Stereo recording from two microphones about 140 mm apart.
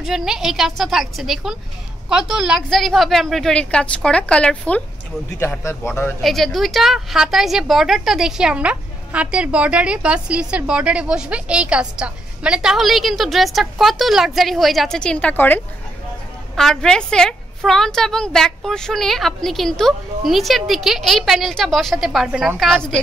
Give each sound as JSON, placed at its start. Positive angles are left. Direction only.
{"t": 0.0, "sound": "a woman's voice", "side_deg": -5}
{"t": 5.8, "sound": "speech", "side_deg": 20}
{"t": 6.2, "sound": "a woman's voice", "side_deg": 0}